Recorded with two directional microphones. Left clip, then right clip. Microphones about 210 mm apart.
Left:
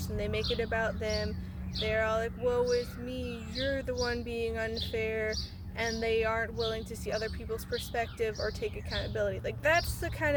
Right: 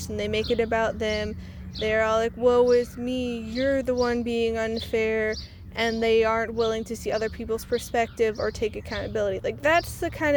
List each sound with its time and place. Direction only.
0.2 s speech: 35° right (ahead or behind)